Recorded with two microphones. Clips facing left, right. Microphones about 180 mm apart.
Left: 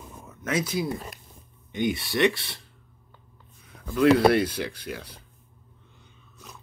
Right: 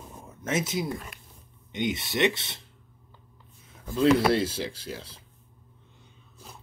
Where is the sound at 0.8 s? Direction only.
35° left (ahead or behind).